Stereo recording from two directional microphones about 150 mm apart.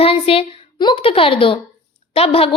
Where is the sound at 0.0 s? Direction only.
40° left (ahead or behind).